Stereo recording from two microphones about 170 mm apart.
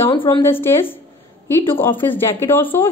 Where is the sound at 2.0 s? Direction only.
10° left (ahead or behind).